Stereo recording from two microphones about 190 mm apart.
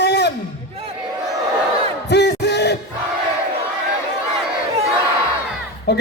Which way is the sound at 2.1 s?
60° left (ahead or behind).